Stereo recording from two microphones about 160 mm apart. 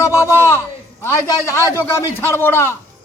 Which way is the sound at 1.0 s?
15° left (ahead or behind).